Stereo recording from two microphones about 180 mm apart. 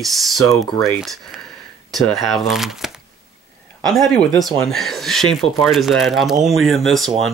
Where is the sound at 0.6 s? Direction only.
20° left (ahead or behind).